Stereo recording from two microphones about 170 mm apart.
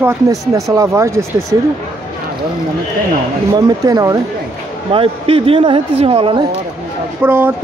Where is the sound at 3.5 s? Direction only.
20° right (ahead or behind).